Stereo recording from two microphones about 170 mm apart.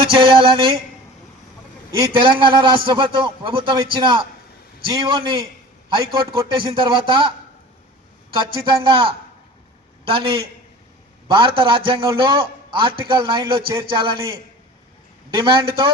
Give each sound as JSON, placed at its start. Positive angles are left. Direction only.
{"t": 0.0, "sound": "a sound", "side_deg": -30}
{"t": 2.0, "sound": "a man's voice", "side_deg": -30}
{"t": 8.6, "sound": "a man's voice", "side_deg": -30}
{"t": 10.1, "sound": "a sound", "side_deg": -30}
{"t": 11.3, "sound": "a man's voice", "side_deg": -30}
{"t": 15.4, "sound": "a man's voice", "side_deg": -30}